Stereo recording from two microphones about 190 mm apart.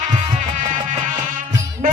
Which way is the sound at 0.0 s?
40° right (ahead or behind).